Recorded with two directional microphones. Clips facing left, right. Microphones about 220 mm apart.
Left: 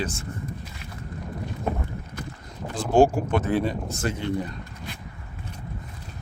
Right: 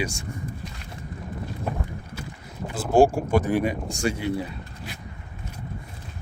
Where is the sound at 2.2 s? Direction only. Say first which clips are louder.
Right 2 dB; 5° right (ahead or behind).